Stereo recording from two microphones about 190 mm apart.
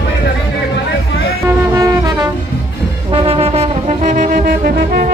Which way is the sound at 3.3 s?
30° right (ahead or behind).